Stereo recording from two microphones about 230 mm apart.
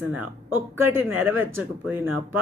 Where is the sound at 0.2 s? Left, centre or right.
Centre.